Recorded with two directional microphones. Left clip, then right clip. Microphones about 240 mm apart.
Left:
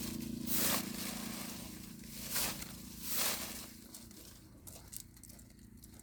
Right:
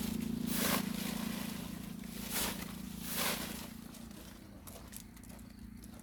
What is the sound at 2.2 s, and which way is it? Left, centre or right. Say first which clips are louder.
Vehicle: right 1 dB; centre.